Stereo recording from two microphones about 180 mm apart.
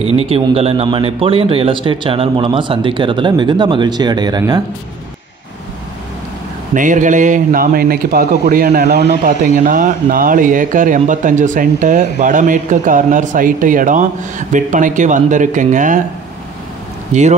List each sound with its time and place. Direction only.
0.0 s a man's voice: 35° right (ahead or behind)
6.7 s a man's voice: 45° right (ahead or behind)
17.1 s speech: 40° right (ahead or behind)